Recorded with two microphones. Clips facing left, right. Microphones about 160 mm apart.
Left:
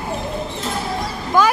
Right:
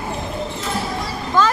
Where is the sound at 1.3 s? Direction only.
10° left (ahead or behind).